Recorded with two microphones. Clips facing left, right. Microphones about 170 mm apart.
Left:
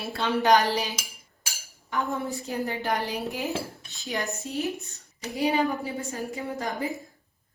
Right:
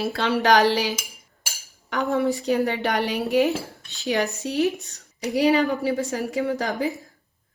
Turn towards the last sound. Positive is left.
turn(degrees=-90)